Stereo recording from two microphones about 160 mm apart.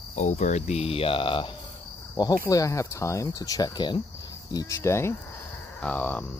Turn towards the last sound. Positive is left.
turn(degrees=10)  # may be behind; listen again after turning